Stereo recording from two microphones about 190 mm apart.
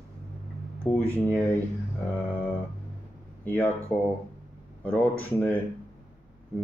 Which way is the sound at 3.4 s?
10° left (ahead or behind).